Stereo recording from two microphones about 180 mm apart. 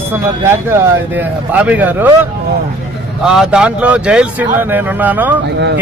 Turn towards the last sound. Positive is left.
turn(degrees=-10)  # may be behind; listen again after turning